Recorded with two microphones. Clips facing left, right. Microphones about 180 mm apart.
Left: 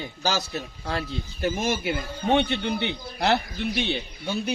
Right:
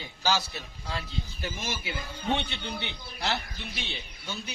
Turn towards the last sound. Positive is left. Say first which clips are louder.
# left 10 dB
turn(degrees=60)  # may be behind; listen again after turning